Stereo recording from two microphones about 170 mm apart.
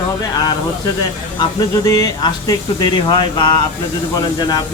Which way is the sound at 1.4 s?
20° left (ahead or behind).